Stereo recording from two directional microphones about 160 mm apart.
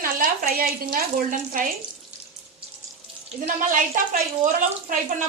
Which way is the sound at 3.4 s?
55° right (ahead or behind).